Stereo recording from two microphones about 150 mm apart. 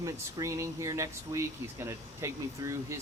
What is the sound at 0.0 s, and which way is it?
Speech, 20° right (ahead or behind).